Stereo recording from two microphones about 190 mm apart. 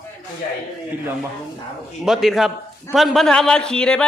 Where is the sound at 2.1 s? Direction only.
Centre (ahead or behind).